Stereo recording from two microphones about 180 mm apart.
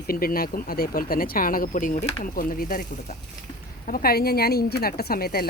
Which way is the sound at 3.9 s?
55° left (ahead or behind).